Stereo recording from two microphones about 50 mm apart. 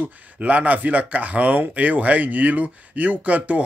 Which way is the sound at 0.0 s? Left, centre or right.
Right.